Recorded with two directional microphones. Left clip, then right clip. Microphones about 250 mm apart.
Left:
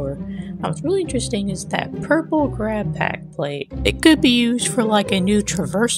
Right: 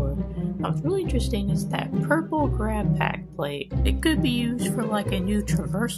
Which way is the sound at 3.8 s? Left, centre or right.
Right.